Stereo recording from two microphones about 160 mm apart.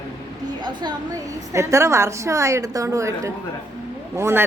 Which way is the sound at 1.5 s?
20° right (ahead or behind).